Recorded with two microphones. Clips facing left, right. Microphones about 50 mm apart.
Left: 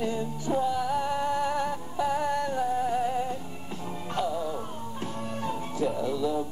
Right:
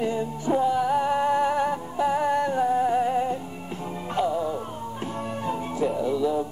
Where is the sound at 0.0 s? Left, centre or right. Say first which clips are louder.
Right 4 dB; right.